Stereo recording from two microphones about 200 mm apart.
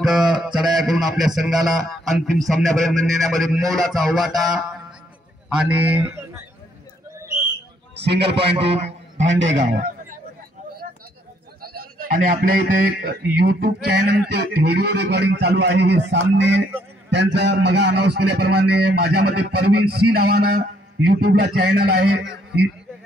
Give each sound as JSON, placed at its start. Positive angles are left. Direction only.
{"t": 0.0, "sound": "music", "side_deg": 0}
{"t": 5.6, "sound": "speech", "side_deg": -5}
{"t": 7.9, "sound": "a man's voice", "side_deg": -55}
{"t": 8.5, "sound": "a man's voice", "side_deg": -30}
{"t": 9.2, "sound": "a man's voice", "side_deg": -70}
{"t": 9.6, "sound": "a sound", "side_deg": -40}
{"t": 12.1, "sound": "a sound", "side_deg": -40}
{"t": 17.1, "sound": "a man's voice", "side_deg": -60}
{"t": 21.2, "sound": "a sound", "side_deg": -50}